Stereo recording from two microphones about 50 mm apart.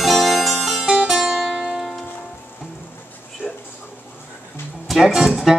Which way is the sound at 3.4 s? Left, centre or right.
Left.